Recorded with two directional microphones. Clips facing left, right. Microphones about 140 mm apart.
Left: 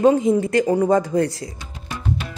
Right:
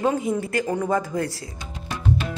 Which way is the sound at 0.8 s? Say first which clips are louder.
Left 6 dB; 35° left (ahead or behind).